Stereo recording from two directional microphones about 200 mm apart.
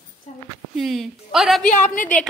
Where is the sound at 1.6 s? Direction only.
40° left (ahead or behind).